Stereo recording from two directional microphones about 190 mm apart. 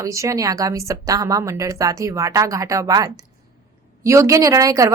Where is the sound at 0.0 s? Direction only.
15° right (ahead or behind).